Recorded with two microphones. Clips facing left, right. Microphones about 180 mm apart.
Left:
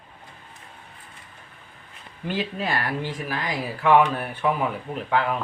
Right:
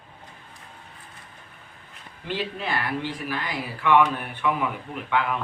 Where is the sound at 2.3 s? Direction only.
45° left (ahead or behind).